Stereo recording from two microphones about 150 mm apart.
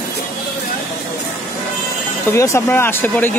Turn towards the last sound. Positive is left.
turn(degrees=10)  # may be behind; listen again after turning